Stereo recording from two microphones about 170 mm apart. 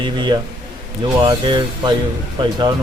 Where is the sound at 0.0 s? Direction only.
25° right (ahead or behind).